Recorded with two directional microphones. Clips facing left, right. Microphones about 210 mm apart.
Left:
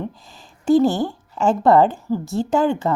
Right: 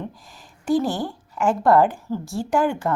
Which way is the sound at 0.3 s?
25° left (ahead or behind).